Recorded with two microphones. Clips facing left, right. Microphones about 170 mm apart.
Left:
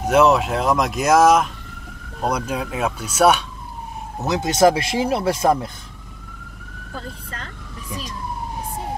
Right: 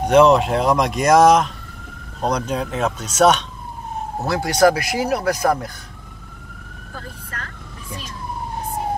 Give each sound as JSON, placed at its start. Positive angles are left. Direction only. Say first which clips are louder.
{"t": 0.0, "sound": "speech", "louder": "right 3 dB", "side_deg": 5}
{"t": 4.3, "sound": "speech", "louder": "even", "side_deg": 20}